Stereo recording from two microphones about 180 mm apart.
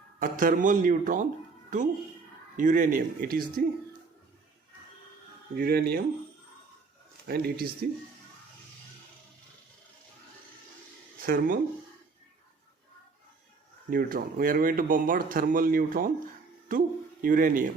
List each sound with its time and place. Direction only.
0.2 s speech: 50° right (ahead or behind)
2.6 s speech: 45° right (ahead or behind)
5.5 s speech: 60° right (ahead or behind)
7.3 s speech: 60° right (ahead or behind)
11.2 s speech: 55° right (ahead or behind)
13.9 s speech: 50° right (ahead or behind)